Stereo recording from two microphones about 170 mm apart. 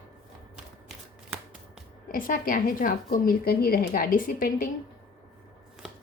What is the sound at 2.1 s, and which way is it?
A woman's voice, 55° left (ahead or behind).